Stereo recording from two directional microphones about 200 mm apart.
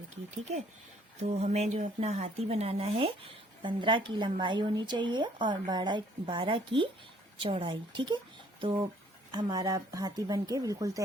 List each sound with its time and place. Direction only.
1.2 s speech: 35° right (ahead or behind)
9.5 s speech: 20° right (ahead or behind)